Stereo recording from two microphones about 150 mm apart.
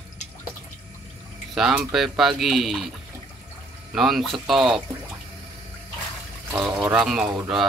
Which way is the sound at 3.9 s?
Centre (ahead or behind).